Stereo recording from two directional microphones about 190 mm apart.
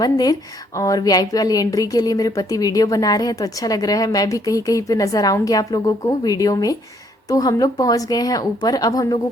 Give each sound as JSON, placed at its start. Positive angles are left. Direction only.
{"t": 0.0, "sound": "a woman's voice", "side_deg": 20}